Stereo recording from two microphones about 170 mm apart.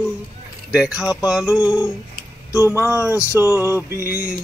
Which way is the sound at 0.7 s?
5° right (ahead or behind).